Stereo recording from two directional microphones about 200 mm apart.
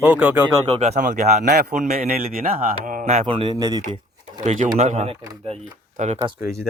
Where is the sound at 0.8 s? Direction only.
35° right (ahead or behind).